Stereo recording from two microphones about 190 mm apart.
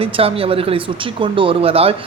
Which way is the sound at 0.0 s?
30° right (ahead or behind).